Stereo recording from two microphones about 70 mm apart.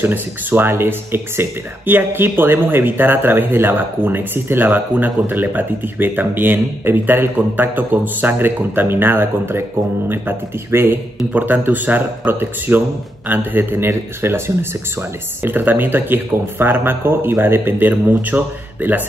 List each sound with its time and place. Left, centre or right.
0.0 s speech: right